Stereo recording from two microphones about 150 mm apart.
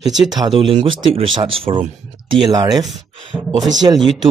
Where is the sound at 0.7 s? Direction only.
40° right (ahead or behind).